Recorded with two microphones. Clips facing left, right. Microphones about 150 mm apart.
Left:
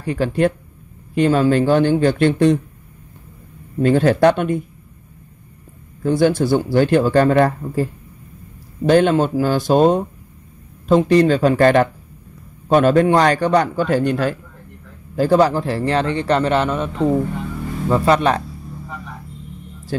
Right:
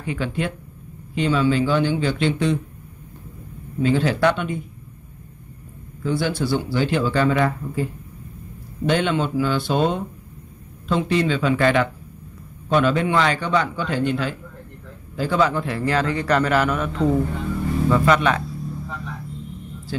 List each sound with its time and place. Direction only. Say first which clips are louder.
0.0 s a man's voice: left 8 dB; 40° left (ahead or behind)
3.8 s speech: left 5 dB; 50° left (ahead or behind)
6.0 s a man's voice: left 7 dB; 45° left (ahead or behind)
18.9 s a sound: right 1 dB; 10° left (ahead or behind)
19.9 s speech: left 4 dB; 50° left (ahead or behind)